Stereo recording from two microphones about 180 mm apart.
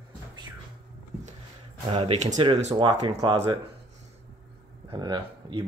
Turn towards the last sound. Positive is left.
turn(degrees=-25)  # may be behind; listen again after turning